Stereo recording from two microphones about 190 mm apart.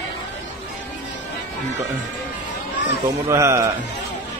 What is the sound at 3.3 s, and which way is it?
Speech, 15° right (ahead or behind).